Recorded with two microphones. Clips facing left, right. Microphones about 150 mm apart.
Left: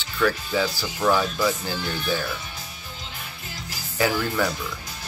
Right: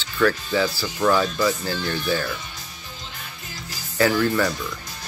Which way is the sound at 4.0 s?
10° left (ahead or behind).